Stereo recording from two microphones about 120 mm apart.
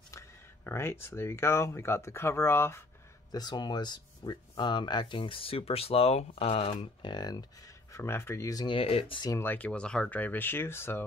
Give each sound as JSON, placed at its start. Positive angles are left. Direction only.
{"t": 0.7, "sound": "speech", "side_deg": 20}
{"t": 3.3, "sound": "speech", "side_deg": 35}
{"t": 8.7, "sound": "speech", "side_deg": 50}
{"t": 9.4, "sound": "speech", "side_deg": 15}